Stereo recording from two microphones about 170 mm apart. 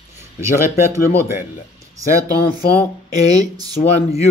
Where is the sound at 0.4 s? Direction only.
15° right (ahead or behind).